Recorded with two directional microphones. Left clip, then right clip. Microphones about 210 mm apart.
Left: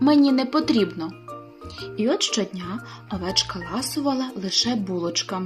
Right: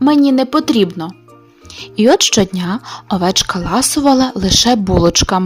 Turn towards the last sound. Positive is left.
turn(degrees=-50)  # may be behind; listen again after turning